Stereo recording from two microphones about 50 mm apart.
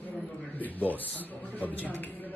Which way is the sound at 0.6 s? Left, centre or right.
Left.